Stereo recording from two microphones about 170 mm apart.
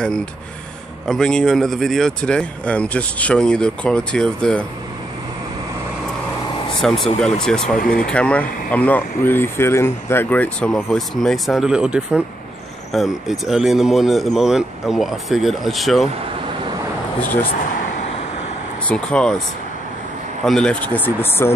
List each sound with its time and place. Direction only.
0.0 s speech: 5° left (ahead or behind)
6.8 s speech: 5° left (ahead or behind)
7.8 s speech: 55° left (ahead or behind)
8.1 s speech: 5° left (ahead or behind)
17.2 s speech: 10° left (ahead or behind)
18.9 s speech: 5° left (ahead or behind)
20.4 s speech: 5° left (ahead or behind)